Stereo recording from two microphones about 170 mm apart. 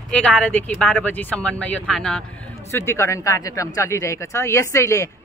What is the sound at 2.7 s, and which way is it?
Speech, 15° left (ahead or behind).